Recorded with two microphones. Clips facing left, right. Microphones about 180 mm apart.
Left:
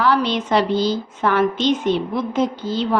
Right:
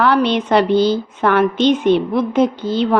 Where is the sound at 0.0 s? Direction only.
60° right (ahead or behind).